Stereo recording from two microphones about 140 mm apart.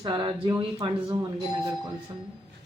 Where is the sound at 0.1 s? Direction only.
35° right (ahead or behind).